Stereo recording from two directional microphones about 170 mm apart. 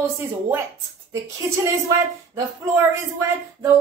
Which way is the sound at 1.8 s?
20° right (ahead or behind).